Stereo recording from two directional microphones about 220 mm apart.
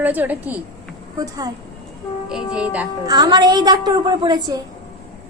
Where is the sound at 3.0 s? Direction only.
20° right (ahead or behind).